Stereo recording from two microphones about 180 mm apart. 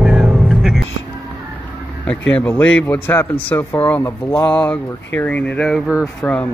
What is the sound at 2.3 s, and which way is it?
Speech, 10° left (ahead or behind).